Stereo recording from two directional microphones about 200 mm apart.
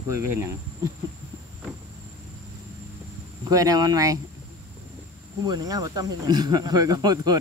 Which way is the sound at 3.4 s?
20° right (ahead or behind).